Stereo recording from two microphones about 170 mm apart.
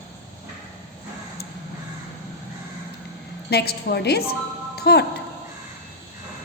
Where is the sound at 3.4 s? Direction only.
70° left (ahead or behind).